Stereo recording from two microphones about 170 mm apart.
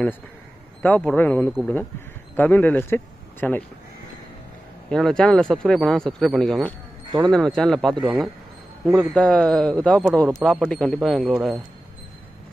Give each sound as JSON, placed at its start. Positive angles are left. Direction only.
{"t": 0.8, "sound": "a man's voice", "side_deg": 10}
{"t": 1.5, "sound": "speech", "side_deg": 0}
{"t": 2.3, "sound": "speech", "side_deg": 10}
{"t": 4.9, "sound": "speech", "side_deg": 5}
{"t": 7.1, "sound": "speech", "side_deg": -25}
{"t": 7.3, "sound": "speech", "side_deg": 5}
{"t": 9.1, "sound": "speech", "side_deg": 5}